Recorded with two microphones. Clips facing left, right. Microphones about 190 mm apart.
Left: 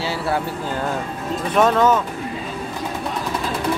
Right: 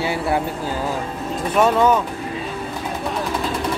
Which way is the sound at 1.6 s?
10° right (ahead or behind).